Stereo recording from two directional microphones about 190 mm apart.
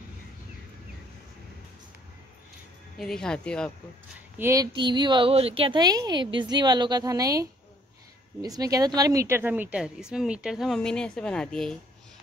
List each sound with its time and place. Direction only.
3.0 s a woman's voice: centre (ahead or behind)
4.4 s a woman's voice: 15° right (ahead or behind); by 11.8 s 5° left (ahead or behind)